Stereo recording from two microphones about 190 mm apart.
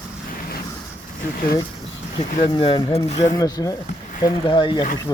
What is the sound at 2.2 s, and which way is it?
Speech, 30° left (ahead or behind).